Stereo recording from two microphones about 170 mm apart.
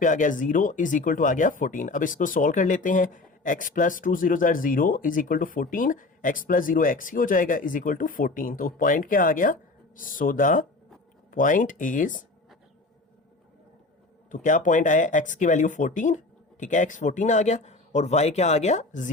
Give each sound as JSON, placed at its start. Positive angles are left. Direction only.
{"t": 0.0, "sound": "speech", "side_deg": 50}
{"t": 14.3, "sound": "speech", "side_deg": 50}